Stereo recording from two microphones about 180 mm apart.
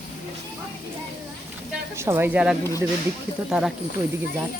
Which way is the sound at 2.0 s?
15° right (ahead or behind).